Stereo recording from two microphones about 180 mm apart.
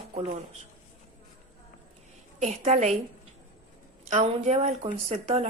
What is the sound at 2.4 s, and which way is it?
Speech, 45° right (ahead or behind).